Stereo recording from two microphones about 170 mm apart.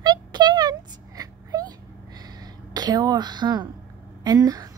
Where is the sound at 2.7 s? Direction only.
25° right (ahead or behind).